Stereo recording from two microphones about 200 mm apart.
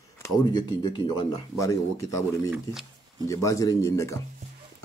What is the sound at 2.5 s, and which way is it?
Speech, centre (ahead or behind).